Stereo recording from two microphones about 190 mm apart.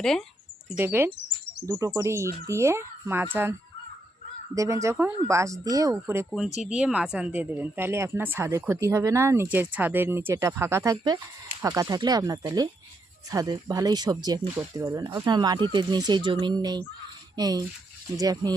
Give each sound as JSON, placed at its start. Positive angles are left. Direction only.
{"t": 0.0, "sound": "speech", "side_deg": 5}
{"t": 0.7, "sound": "a woman's voice", "side_deg": -10}
{"t": 4.5, "sound": "a woman's voice", "side_deg": -15}